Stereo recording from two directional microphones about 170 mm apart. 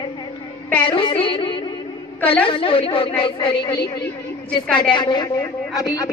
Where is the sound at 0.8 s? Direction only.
30° left (ahead or behind).